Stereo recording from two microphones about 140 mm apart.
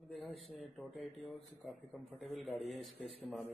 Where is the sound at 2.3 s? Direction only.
Centre (ahead or behind).